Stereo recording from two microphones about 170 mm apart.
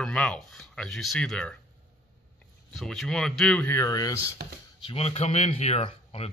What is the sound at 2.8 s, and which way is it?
Speech, centre (ahead or behind).